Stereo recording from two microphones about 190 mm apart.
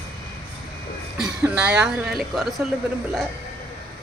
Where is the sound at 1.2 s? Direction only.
5° right (ahead or behind).